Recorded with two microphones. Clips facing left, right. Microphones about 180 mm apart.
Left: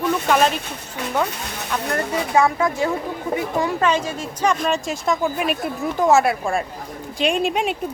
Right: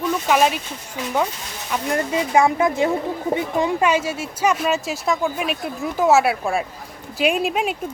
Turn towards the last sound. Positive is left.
turn(degrees=0)  # may be behind; listen again after turning